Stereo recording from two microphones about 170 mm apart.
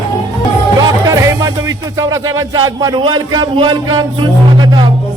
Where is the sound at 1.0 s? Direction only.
20° right (ahead or behind).